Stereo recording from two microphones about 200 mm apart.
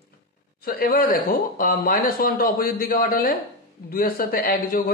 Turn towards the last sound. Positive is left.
turn(degrees=45)  # may be behind; listen again after turning